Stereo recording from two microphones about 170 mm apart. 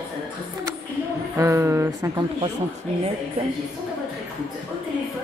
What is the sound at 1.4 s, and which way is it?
A woman's voice, 15° right (ahead or behind).